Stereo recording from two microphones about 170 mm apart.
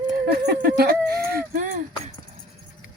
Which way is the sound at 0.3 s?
65° right (ahead or behind).